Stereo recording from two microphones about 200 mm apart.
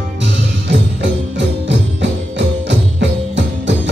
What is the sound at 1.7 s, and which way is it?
Music, 65° right (ahead or behind).